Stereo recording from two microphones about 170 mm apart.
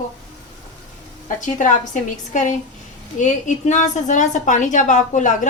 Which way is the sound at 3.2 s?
45° left (ahead or behind).